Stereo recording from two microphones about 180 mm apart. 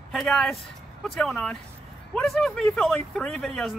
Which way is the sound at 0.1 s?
Centre (ahead or behind).